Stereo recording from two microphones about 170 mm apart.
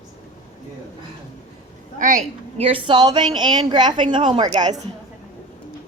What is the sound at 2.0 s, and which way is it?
A woman's voice, 45° right (ahead or behind).